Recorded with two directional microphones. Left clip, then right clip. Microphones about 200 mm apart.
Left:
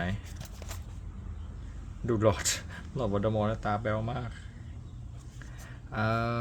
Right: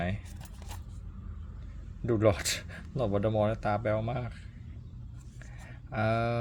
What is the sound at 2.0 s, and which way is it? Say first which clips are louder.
Speech: even; 10° right (ahead or behind).